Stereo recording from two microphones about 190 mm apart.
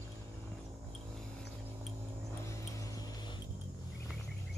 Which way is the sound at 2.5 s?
15° left (ahead or behind).